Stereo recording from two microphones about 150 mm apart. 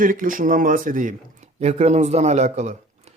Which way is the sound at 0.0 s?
65° right (ahead or behind).